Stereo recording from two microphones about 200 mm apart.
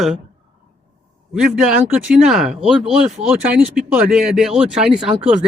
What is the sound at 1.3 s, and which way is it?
Speech, 5° right (ahead or behind).